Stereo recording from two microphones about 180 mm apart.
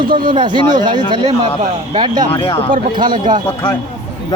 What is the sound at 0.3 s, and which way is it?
Speech, 25° right (ahead or behind).